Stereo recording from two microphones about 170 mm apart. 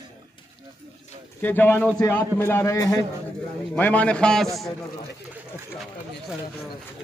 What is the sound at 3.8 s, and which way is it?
Speech, 10° left (ahead or behind).